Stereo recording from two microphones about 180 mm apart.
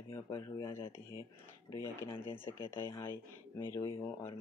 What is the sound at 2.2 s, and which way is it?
Speech, 15° left (ahead or behind).